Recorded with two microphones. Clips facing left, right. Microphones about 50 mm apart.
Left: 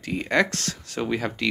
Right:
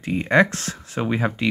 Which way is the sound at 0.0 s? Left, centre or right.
Right.